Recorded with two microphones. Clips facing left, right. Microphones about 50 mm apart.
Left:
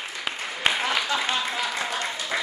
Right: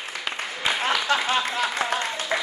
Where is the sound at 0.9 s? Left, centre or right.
Right.